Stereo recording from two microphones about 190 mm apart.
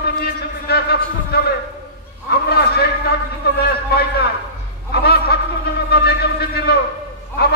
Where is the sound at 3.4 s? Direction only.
55° left (ahead or behind).